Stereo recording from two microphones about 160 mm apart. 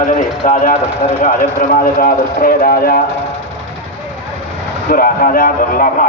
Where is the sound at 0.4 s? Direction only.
50° left (ahead or behind).